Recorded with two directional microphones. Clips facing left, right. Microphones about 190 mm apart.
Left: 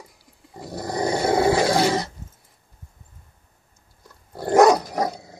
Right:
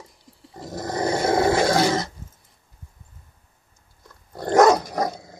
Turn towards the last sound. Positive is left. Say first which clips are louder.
# even
turn(degrees=10)  # may be behind; listen again after turning